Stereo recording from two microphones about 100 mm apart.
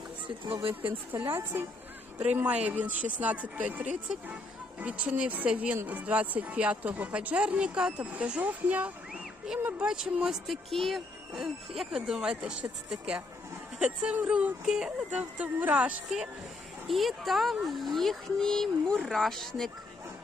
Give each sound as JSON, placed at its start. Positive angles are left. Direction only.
{"t": 0.3, "sound": "speech", "side_deg": -65}
{"t": 1.2, "sound": "a woman's voice", "side_deg": -25}
{"t": 2.3, "sound": "a woman's voice", "side_deg": -10}